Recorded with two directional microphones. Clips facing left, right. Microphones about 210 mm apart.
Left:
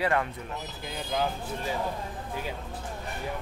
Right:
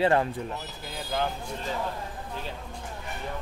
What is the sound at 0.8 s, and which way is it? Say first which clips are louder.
Speech: even; centre (ahead or behind).